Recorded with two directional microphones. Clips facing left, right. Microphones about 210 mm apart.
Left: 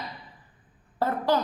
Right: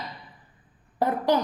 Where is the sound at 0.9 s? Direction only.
15° right (ahead or behind).